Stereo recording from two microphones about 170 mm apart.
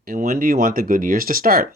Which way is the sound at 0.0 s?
55° right (ahead or behind).